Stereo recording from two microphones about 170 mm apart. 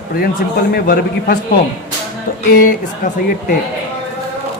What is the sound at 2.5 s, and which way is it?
Speech, 55° left (ahead or behind).